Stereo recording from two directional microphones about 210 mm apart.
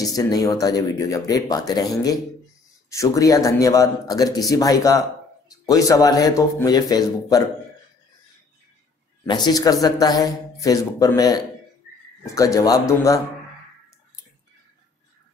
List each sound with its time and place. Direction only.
0.0 s speech: 15° left (ahead or behind)
9.3 s speech: 20° left (ahead or behind)